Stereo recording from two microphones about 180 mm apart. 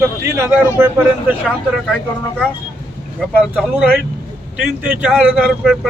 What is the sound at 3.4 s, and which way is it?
Speech, centre (ahead or behind).